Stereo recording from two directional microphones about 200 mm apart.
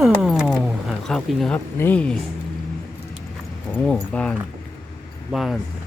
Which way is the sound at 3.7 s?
5° left (ahead or behind).